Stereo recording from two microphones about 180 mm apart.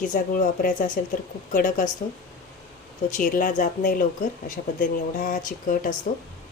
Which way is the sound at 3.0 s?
45° left (ahead or behind).